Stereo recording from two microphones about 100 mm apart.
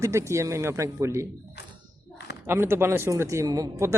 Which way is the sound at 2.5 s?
25° right (ahead or behind).